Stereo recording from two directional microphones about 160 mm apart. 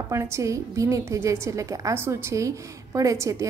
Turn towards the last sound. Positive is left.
turn(degrees=-20)  # may be behind; listen again after turning